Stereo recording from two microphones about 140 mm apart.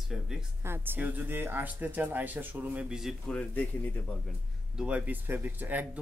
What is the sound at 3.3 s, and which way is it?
Speech, 10° left (ahead or behind).